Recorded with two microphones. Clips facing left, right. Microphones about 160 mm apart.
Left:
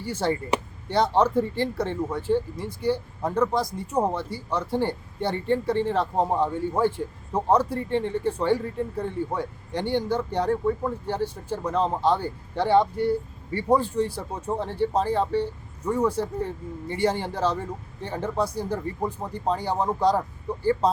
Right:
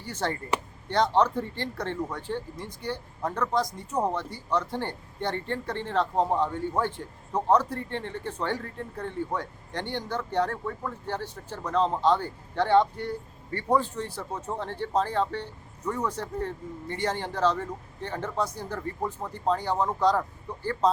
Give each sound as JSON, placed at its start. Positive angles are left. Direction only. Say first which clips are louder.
{"t": 0.0, "sound": "speech", "louder": "left 5 dB", "side_deg": 10}